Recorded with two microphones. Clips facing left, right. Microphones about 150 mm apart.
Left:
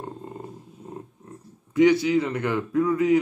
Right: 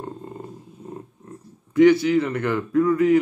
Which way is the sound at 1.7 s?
20° left (ahead or behind).